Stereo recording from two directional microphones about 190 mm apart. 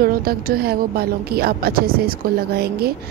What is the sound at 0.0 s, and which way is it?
A woman's voice, 50° right (ahead or behind).